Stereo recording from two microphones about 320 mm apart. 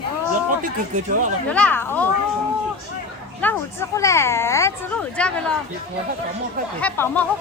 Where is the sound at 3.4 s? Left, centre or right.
Centre.